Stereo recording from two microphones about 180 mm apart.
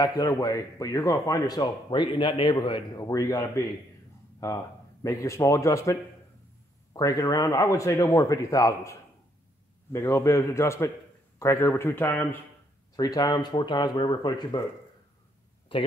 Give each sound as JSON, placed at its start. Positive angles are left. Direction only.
{"t": 0.0, "sound": "a man's voice", "side_deg": 20}
{"t": 9.9, "sound": "a man's voice", "side_deg": 15}